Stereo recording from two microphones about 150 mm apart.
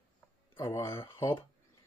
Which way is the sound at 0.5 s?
20° left (ahead or behind).